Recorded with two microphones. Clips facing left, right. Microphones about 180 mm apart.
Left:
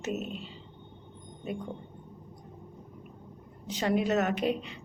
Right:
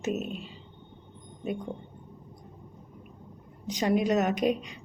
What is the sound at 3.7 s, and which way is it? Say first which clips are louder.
A woman's voice: right 2 dB; 15° right (ahead or behind).